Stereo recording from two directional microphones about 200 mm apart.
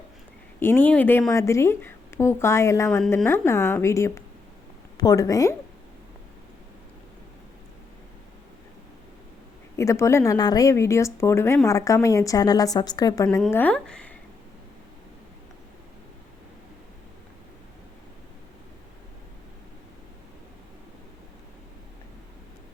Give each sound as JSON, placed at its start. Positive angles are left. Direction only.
{"t": 0.6, "sound": "a woman's voice", "side_deg": 10}
{"t": 9.7, "sound": "a woman's voice", "side_deg": 15}
{"t": 13.5, "sound": "a woman's voice", "side_deg": 10}